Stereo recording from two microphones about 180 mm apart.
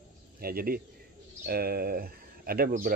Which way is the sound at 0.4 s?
55° right (ahead or behind).